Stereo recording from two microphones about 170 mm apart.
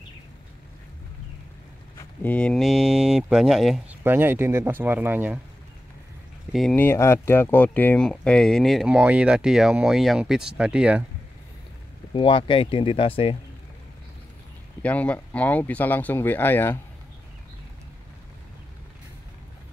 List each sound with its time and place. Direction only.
2.2 s speech: 5° left (ahead or behind)
4.0 s speech: 10° right (ahead or behind)
6.5 s speech: 5° left (ahead or behind)
12.1 s speech: 30° left (ahead or behind)
14.8 s speech: 10° left (ahead or behind)